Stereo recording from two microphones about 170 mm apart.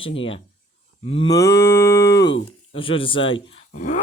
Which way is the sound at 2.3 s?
30° left (ahead or behind).